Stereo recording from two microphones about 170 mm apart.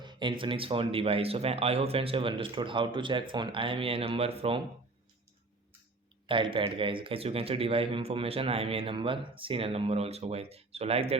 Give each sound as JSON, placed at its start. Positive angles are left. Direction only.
{"t": 0.0, "sound": "speech", "side_deg": -25}
{"t": 6.2, "sound": "speech", "side_deg": -30}